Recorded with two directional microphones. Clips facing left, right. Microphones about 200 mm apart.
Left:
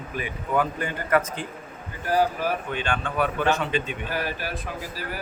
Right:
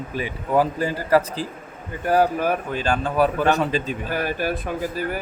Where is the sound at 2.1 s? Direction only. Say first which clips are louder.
Right 4 dB; 55° right (ahead or behind).